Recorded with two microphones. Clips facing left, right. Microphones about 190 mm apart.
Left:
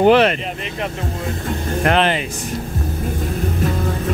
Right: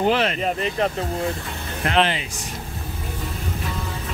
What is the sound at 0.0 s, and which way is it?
Speech, 65° left (ahead or behind).